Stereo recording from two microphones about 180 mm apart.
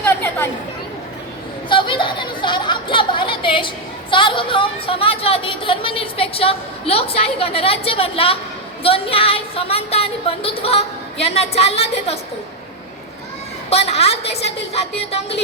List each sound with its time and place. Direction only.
0.0 s chatter: 10° left (ahead or behind)
1.7 s chatter: 25° left (ahead or behind)
4.1 s a woman's voice: 25° left (ahead or behind)
13.7 s a woman's voice: 35° left (ahead or behind)